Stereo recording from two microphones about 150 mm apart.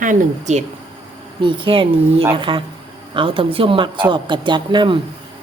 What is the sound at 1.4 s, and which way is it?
Speech, 35° right (ahead or behind).